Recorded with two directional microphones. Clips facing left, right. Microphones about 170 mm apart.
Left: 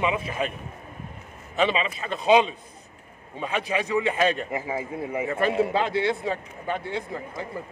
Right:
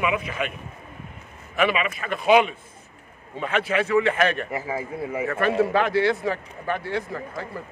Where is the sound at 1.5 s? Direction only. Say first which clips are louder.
Right 1 dB; 25° left (ahead or behind).